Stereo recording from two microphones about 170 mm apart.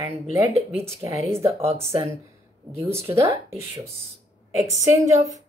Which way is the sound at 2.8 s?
15° right (ahead or behind).